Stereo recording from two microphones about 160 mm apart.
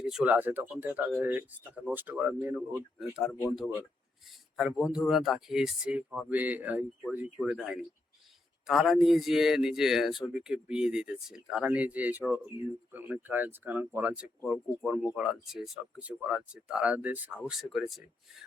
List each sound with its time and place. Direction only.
0.0 s speech: 5° right (ahead or behind)
4.5 s a man's voice: 5° right (ahead or behind)